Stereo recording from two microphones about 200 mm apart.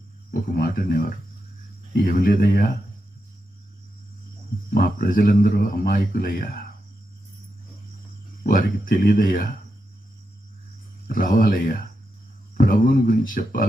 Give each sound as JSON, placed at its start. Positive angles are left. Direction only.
{"t": 0.3, "sound": "speech", "side_deg": 50}
{"t": 4.7, "sound": "speech", "side_deg": 45}
{"t": 8.4, "sound": "speech", "side_deg": 45}
{"t": 11.1, "sound": "speech", "side_deg": 45}